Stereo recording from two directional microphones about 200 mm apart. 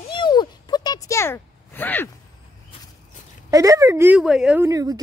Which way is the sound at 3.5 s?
15° right (ahead or behind).